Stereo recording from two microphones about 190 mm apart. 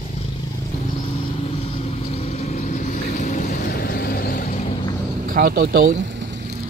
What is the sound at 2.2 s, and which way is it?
Boat, 35° left (ahead or behind).